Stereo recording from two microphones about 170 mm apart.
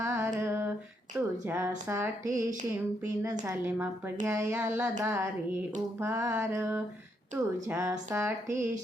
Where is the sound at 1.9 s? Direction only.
15° right (ahead or behind).